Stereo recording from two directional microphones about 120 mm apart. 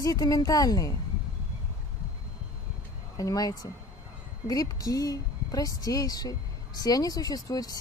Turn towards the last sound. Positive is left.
turn(degrees=30)  # may be behind; listen again after turning